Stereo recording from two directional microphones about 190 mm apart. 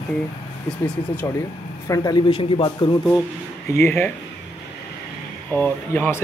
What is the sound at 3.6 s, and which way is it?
Speech, 15° left (ahead or behind).